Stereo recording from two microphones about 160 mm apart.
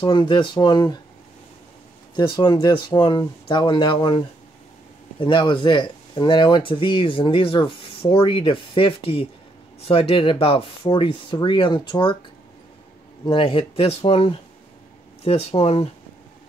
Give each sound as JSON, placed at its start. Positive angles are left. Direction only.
{"t": 0.0, "sound": "speech", "side_deg": 30}
{"t": 2.1, "sound": "speech", "side_deg": 30}
{"t": 5.2, "sound": "speech", "side_deg": 30}
{"t": 13.2, "sound": "speech", "side_deg": 30}